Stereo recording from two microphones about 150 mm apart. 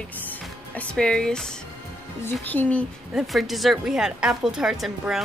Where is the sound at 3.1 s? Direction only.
Centre (ahead or behind).